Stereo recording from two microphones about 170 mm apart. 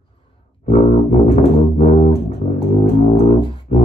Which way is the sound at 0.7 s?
40° left (ahead or behind).